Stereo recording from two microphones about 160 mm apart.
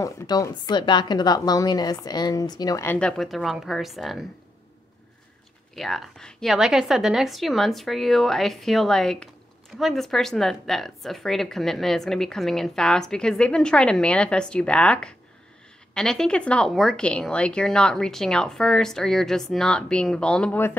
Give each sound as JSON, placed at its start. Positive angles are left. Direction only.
{"t": 0.0, "sound": "speech", "side_deg": 25}
{"t": 5.8, "sound": "a woman's voice", "side_deg": 0}